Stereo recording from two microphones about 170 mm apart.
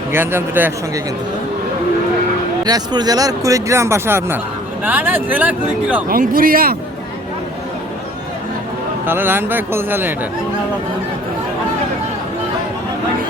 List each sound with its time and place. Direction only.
0.1 s speech: 15° right (ahead or behind)
2.6 s speech: 25° right (ahead or behind)
6.1 s speech: 55° right (ahead or behind)
9.0 s speech: 10° right (ahead or behind)